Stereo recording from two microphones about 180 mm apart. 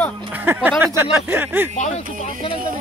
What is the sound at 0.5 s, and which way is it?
Speech, 5° right (ahead or behind).